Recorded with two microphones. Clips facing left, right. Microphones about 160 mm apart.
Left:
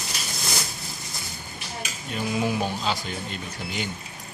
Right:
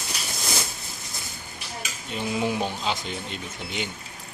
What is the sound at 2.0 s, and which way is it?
Speech, 20° right (ahead or behind).